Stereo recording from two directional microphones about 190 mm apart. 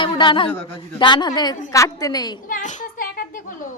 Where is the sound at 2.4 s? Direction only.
40° left (ahead or behind).